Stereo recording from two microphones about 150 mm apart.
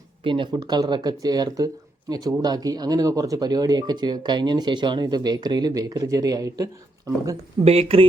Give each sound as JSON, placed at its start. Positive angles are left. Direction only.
{"t": 0.3, "sound": "speech", "side_deg": -35}
{"t": 7.6, "sound": "speech", "side_deg": -40}